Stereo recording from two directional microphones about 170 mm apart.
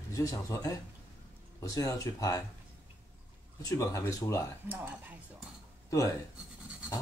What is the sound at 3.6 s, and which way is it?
Speech, 20° left (ahead or behind).